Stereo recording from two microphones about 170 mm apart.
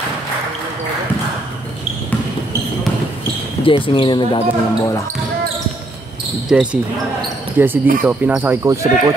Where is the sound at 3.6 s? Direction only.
30° left (ahead or behind).